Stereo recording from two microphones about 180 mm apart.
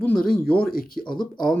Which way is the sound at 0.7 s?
55° left (ahead or behind).